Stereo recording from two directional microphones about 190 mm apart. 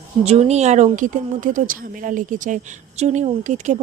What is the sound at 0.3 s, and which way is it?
A woman's voice, 35° right (ahead or behind).